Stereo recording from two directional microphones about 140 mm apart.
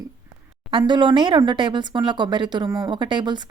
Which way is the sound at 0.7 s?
35° right (ahead or behind).